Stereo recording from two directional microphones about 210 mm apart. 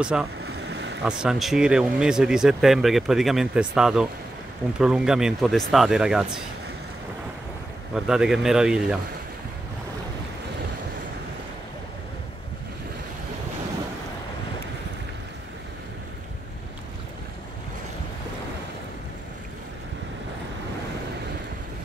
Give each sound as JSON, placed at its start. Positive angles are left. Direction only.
{"t": 0.0, "sound": "speech", "side_deg": -5}
{"t": 0.4, "sound": "boat", "side_deg": -55}
{"t": 1.0, "sound": "speech", "side_deg": -5}
{"t": 7.9, "sound": "speech", "side_deg": -5}